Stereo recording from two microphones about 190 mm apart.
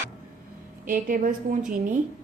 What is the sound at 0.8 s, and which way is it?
Speech, 45° right (ahead or behind).